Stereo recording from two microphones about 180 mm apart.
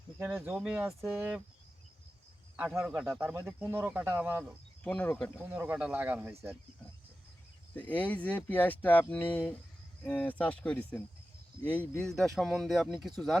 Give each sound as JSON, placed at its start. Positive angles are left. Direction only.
{"t": 0.2, "sound": "speech", "side_deg": -15}
{"t": 2.6, "sound": "speech", "side_deg": -10}
{"t": 4.8, "sound": "speech", "side_deg": 10}
{"t": 5.5, "sound": "speech", "side_deg": -10}
{"t": 7.8, "sound": "speech", "side_deg": 10}